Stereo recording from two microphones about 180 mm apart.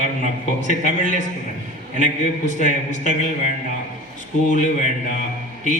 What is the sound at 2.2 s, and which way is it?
Speech, 45° left (ahead or behind).